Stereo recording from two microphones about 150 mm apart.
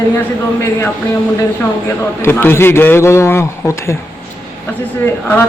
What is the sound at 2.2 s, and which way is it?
A man's voice, 15° left (ahead or behind).